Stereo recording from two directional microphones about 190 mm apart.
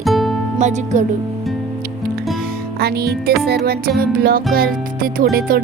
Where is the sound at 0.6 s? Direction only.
40° right (ahead or behind).